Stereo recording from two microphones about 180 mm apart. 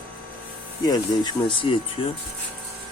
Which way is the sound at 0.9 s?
25° left (ahead or behind).